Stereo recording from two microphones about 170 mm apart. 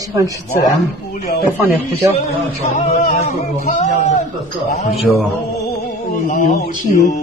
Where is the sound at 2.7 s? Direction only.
40° left (ahead or behind).